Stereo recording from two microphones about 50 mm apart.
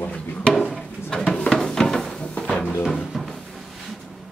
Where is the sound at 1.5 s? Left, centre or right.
Centre.